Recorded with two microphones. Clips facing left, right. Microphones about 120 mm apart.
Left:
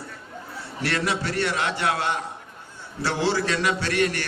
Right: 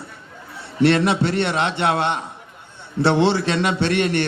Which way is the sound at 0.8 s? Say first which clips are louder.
Right 10 dB; 25° right (ahead or behind).